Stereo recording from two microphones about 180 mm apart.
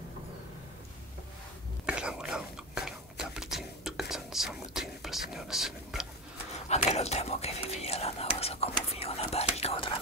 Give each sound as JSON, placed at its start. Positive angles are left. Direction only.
{"t": 1.9, "sound": "whispering", "side_deg": -5}
{"t": 6.7, "sound": "whispering", "side_deg": 35}